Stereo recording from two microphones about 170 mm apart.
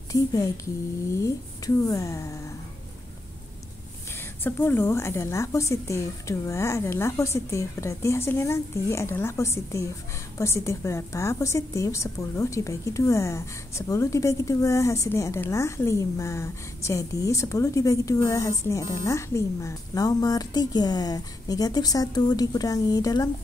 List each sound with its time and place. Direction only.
0.1 s speech: 20° left (ahead or behind)
1.9 s speech: 20° left (ahead or behind)
4.4 s a woman's voice: 10° left (ahead or behind)